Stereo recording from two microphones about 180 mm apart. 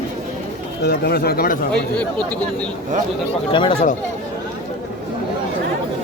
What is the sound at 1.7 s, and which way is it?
Speech, 5° left (ahead or behind).